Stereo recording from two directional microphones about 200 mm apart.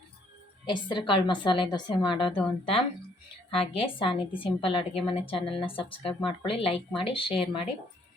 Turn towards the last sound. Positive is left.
turn(degrees=25)  # may be behind; listen again after turning